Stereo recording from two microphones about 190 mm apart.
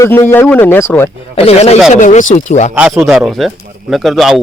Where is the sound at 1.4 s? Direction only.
30° left (ahead or behind).